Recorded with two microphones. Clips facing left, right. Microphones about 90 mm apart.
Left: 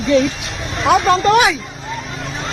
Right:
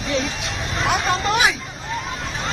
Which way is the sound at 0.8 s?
85° left.